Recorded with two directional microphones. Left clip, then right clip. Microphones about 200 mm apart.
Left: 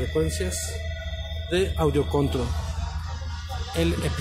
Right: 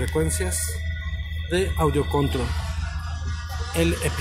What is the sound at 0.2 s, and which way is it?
Speech, 10° right (ahead or behind).